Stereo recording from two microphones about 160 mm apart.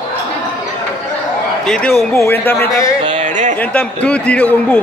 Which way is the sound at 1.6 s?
5° left (ahead or behind).